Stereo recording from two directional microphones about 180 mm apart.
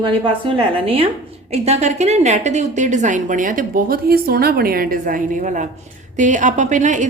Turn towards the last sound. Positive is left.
turn(degrees=-45)  # may be behind; listen again after turning